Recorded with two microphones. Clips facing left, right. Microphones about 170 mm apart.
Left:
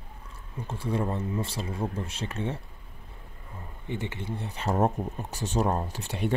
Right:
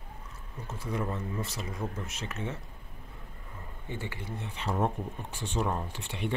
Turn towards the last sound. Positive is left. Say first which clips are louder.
# left 4 dB
turn(degrees=40)  # may be behind; listen again after turning